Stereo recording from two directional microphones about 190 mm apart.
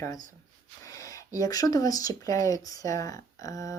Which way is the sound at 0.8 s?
20° left (ahead or behind).